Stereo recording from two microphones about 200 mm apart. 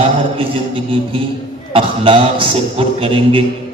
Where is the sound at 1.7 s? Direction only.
25° right (ahead or behind).